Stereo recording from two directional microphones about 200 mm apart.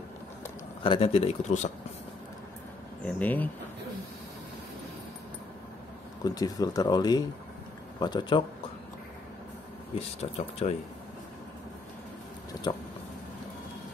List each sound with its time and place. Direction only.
0.8 s speech: 25° left (ahead or behind)
3.1 s speech: 10° left (ahead or behind)
6.2 s speech: 20° left (ahead or behind)
9.9 s speech: 30° left (ahead or behind)